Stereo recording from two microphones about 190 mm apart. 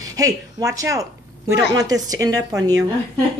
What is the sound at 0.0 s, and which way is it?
A woman's voice, 20° right (ahead or behind).